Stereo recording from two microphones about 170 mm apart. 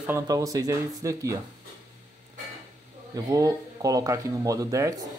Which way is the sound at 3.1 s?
20° right (ahead or behind).